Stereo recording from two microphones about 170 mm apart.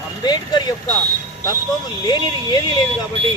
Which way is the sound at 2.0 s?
25° left (ahead or behind).